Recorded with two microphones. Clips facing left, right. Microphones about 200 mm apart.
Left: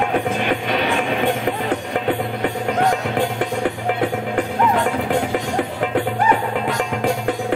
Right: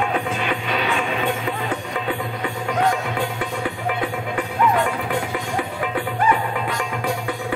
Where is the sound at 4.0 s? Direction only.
50° left (ahead or behind).